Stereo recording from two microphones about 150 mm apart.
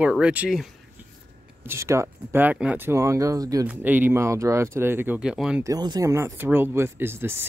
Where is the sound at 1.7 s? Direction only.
20° right (ahead or behind).